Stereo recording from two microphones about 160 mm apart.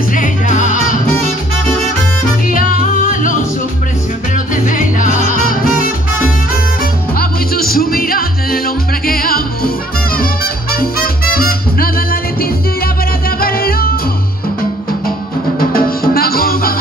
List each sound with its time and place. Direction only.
0.1 s music: 55° left (ahead or behind)
2.5 s music: 60° left (ahead or behind)
4.6 s music: 55° left (ahead or behind)
7.2 s music: 65° left (ahead or behind)
15.7 s music: 70° left (ahead or behind)